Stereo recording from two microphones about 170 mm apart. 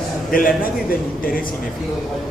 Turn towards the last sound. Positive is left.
turn(degrees=55)  # may be behind; listen again after turning